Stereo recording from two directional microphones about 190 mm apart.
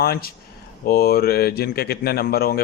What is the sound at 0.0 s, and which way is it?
Speech, 55° left (ahead or behind).